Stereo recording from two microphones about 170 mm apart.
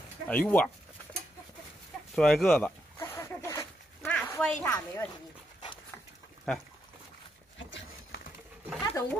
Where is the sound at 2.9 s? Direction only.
20° left (ahead or behind).